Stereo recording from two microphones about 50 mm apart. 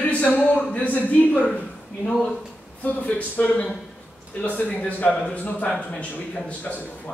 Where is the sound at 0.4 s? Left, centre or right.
Left.